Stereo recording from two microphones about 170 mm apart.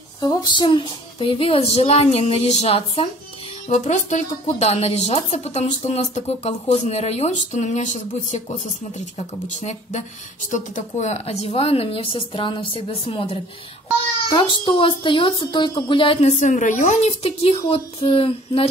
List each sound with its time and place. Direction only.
0.2 s speech: 25° left (ahead or behind); by 8.4 s 45° left (ahead or behind)
9.6 s speech: 45° left (ahead or behind)